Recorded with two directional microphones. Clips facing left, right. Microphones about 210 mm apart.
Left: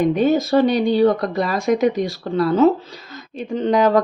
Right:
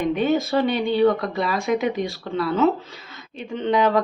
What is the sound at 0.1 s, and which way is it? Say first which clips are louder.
Speech: left 4 dB; 40° left (ahead or behind).